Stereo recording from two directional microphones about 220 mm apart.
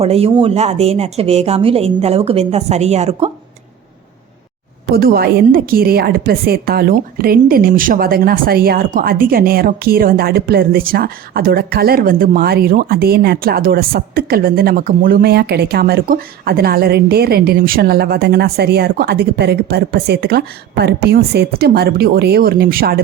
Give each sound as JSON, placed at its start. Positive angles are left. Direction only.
{"t": 0.0, "sound": "a woman's voice", "side_deg": -25}
{"t": 4.9, "sound": "a woman's voice", "side_deg": -45}